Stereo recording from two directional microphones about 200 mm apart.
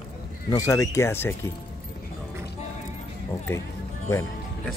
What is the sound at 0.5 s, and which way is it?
Speech, 15° left (ahead or behind).